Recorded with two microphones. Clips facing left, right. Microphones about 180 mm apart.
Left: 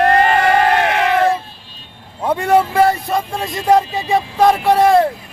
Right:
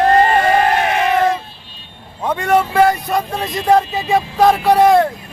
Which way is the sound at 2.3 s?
10° left (ahead or behind).